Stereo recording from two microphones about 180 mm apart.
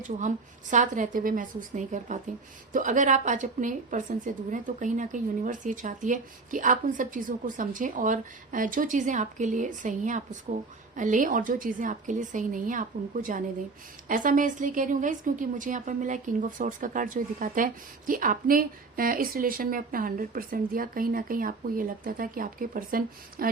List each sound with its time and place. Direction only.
0.2 s a woman's voice: 45° right (ahead or behind)